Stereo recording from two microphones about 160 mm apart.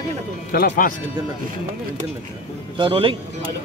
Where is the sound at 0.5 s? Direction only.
70° left (ahead or behind).